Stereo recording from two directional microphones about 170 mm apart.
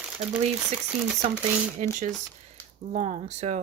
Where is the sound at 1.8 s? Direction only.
50° right (ahead or behind).